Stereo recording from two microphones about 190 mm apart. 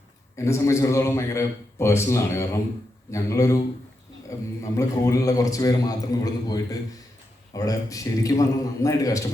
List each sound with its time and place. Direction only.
0.3 s a man's voice: 15° left (ahead or behind)